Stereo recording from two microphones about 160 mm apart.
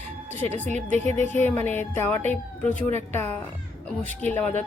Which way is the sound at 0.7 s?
45° right (ahead or behind).